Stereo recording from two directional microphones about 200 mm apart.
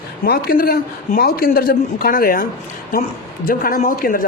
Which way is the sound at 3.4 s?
45° left (ahead or behind).